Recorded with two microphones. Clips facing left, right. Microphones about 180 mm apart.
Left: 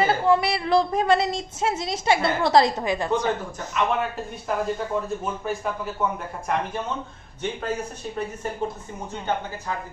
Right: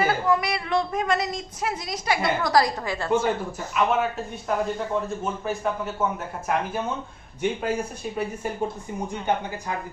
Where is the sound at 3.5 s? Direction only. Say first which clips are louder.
Right 1 dB; 5° right (ahead or behind).